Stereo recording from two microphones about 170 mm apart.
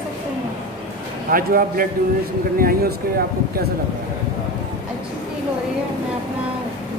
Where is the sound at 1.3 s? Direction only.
55° right (ahead or behind).